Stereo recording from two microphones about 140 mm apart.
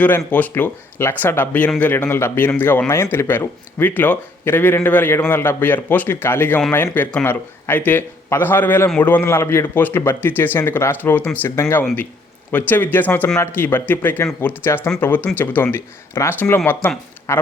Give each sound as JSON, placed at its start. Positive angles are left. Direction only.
{"t": 0.3, "sound": "speech", "side_deg": 10}